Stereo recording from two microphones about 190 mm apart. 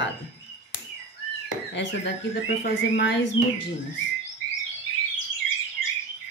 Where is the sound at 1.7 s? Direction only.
70° left (ahead or behind).